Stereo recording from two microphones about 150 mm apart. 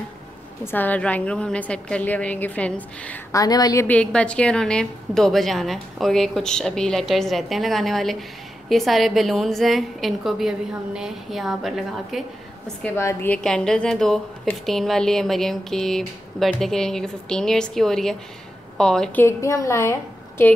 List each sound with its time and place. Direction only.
0.7 s a woman's voice: 10° left (ahead or behind)
3.3 s speech: 25° left (ahead or behind)
3.8 s a woman's voice: 10° left (ahead or behind)
12.9 s a woman's voice: 15° left (ahead or behind)
13.4 s a woman's voice: 5° left (ahead or behind)
19.2 s a woman's voice: 20° left (ahead or behind)